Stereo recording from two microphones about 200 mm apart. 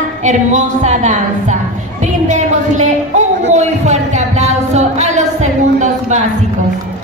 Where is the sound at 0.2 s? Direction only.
35° right (ahead or behind).